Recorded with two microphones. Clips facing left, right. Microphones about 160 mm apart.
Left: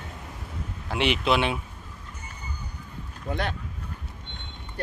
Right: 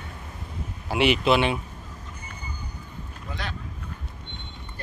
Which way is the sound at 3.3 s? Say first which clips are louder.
Left 6 dB; 55° left (ahead or behind).